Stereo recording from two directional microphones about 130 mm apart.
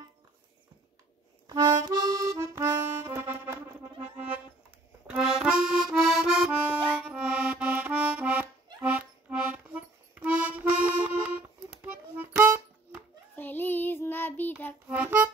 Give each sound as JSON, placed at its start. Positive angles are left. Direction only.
{"t": 1.7, "sound": "music", "side_deg": -30}
{"t": 5.0, "sound": "accordion", "side_deg": -5}
{"t": 13.4, "sound": "child singing", "side_deg": 15}
{"t": 14.9, "sound": "music", "side_deg": -15}